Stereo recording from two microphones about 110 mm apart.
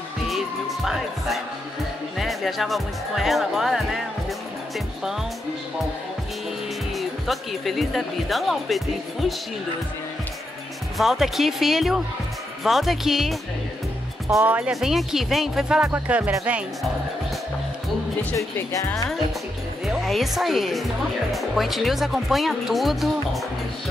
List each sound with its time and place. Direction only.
0.3 s music: centre (ahead or behind)
2.1 s speech: centre (ahead or behind)
7.0 s speech: centre (ahead or behind)
11.0 s speech: centre (ahead or behind)
14.4 s music: 15° right (ahead or behind)
14.7 s speech: 5° right (ahead or behind)
15.9 s music: 15° right (ahead or behind)
18.3 s speech: 30° left (ahead or behind)
19.8 s a woman's voice: centre (ahead or behind)